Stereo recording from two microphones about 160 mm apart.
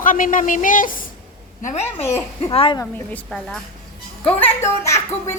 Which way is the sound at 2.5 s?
35° left (ahead or behind).